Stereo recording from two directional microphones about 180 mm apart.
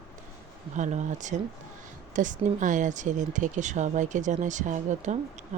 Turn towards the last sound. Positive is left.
turn(degrees=-45)  # may be behind; listen again after turning